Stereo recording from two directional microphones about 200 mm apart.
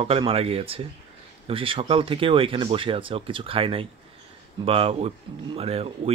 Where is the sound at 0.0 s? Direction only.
30° right (ahead or behind).